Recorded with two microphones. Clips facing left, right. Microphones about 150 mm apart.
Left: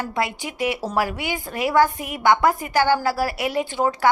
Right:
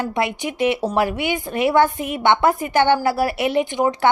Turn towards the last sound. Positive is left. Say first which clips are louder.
# right 3 dB
turn(degrees=-20)  # may be behind; listen again after turning